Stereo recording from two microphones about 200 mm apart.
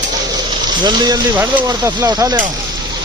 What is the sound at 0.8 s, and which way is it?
Speech, 20° right (ahead or behind).